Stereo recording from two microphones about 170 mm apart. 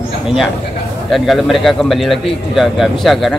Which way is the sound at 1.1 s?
Centre (ahead or behind).